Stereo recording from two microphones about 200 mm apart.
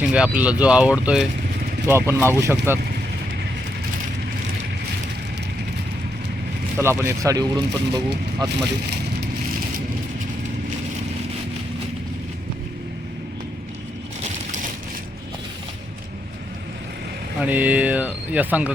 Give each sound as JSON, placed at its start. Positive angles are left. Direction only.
{"t": 0.0, "sound": "speech", "side_deg": -5}
{"t": 6.7, "sound": "speech", "side_deg": -10}
{"t": 17.4, "sound": "speech", "side_deg": -10}